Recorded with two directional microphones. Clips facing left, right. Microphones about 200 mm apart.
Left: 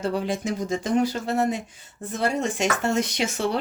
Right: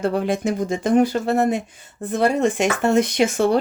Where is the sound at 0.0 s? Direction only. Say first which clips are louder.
Right 5 dB; 55° right (ahead or behind).